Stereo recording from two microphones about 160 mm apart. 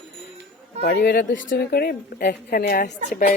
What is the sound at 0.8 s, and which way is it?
A woman's voice, 90° left.